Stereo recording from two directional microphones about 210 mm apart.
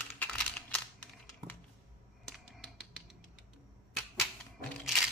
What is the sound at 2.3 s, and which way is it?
Finger snapping, centre (ahead or behind).